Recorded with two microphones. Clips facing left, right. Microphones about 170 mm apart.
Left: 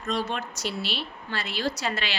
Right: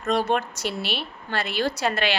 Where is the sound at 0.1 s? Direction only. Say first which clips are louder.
Right 6 dB; 55° right (ahead or behind).